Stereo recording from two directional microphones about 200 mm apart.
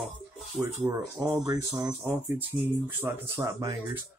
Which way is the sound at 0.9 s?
20° right (ahead or behind).